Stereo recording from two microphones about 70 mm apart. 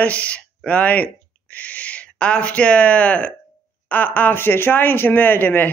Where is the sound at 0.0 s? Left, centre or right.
Centre.